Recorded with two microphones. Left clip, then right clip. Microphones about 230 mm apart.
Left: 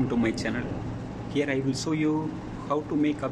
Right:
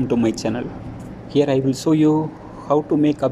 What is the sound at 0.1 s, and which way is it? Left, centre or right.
Speech, centre.